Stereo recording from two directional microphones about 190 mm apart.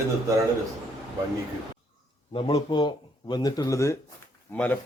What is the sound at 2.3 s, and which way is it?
A man's voice, 25° left (ahead or behind).